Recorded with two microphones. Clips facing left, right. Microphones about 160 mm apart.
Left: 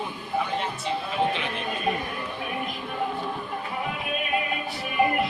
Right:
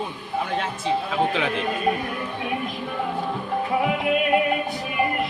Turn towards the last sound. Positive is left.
turn(degrees=-70)  # may be behind; listen again after turning